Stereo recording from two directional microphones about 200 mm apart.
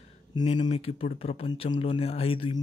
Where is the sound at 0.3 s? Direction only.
20° left (ahead or behind).